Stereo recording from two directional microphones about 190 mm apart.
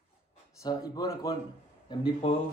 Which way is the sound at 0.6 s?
20° left (ahead or behind).